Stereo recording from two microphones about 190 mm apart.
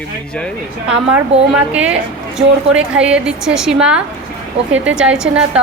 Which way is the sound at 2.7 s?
5° right (ahead or behind).